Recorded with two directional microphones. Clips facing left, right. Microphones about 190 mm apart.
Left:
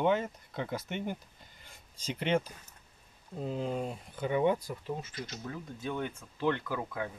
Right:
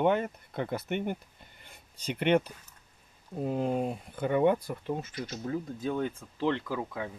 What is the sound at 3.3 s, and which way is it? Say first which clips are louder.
Speech: right 5 dB; 55° right (ahead or behind).